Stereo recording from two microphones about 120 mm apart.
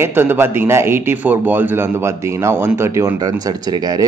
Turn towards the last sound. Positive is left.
turn(degrees=-30)  # may be behind; listen again after turning